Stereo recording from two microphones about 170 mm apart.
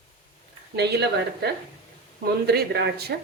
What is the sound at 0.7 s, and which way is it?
Speech, 75° right (ahead or behind).